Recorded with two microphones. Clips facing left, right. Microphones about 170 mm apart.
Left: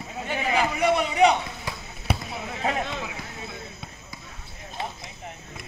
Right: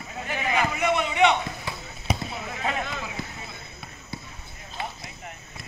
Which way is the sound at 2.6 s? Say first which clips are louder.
Left 3 dB; 30° left (ahead or behind).